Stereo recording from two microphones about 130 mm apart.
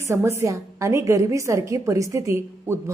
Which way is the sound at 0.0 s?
20° right (ahead or behind).